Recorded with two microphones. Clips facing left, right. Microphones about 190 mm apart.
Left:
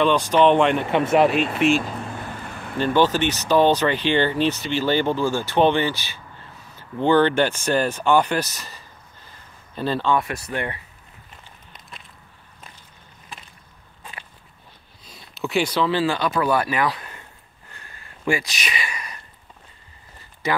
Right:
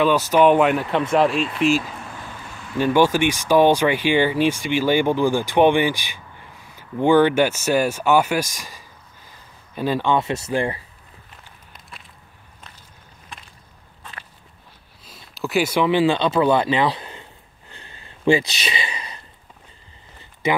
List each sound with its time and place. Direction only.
0.0 s speech: 5° right (ahead or behind)
2.8 s speech: 10° right (ahead or behind); by 10.8 s 30° right (ahead or behind)
13.3 s chop: 5° left (ahead or behind)
15.0 s speech: centre (ahead or behind); by 17.3 s 25° right (ahead or behind)
17.7 s a sound: 25° right (ahead or behind)